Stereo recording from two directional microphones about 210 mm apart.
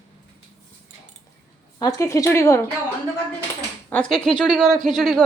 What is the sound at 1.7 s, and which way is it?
Speech, 15° left (ahead or behind).